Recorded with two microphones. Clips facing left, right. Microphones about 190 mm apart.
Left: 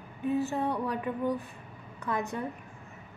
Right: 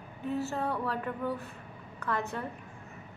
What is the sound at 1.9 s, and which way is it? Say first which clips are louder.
Speech: left 1 dB; 15° left (ahead or behind).